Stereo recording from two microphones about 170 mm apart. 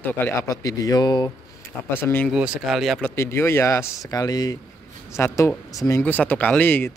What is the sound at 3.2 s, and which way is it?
Speech, 15° left (ahead or behind).